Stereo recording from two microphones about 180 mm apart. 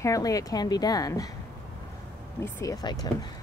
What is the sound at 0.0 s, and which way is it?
Speech, 20° left (ahead or behind).